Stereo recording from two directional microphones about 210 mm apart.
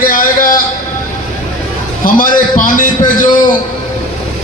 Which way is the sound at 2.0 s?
40° left (ahead or behind).